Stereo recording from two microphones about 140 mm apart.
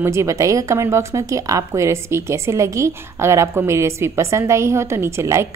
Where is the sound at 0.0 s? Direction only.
20° right (ahead or behind).